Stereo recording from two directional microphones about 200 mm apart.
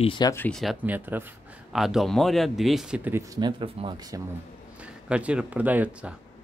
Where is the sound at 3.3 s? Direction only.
25° right (ahead or behind).